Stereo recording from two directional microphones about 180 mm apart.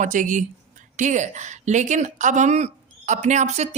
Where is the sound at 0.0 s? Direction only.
45° right (ahead or behind).